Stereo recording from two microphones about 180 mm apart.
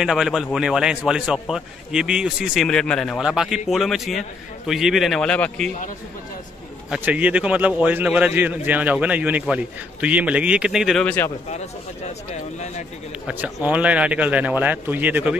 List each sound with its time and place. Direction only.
0.0 s a man's voice: centre (ahead or behind)
6.9 s a man's voice: 10° right (ahead or behind); by 11.3 s 10° left (ahead or behind)
12.5 s speech: 40° left (ahead or behind)
13.3 s a man's voice: 10° right (ahead or behind)